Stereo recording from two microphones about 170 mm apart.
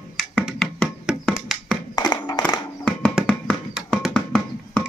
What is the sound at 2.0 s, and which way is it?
Hands, 25° left (ahead or behind).